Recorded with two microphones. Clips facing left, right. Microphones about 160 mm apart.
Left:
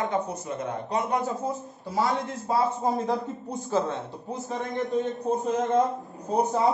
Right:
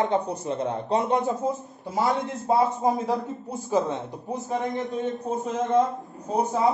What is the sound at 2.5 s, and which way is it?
Speech, 10° right (ahead or behind).